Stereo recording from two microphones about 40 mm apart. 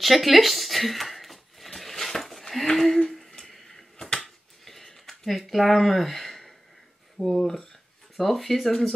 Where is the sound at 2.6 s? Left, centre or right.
Centre.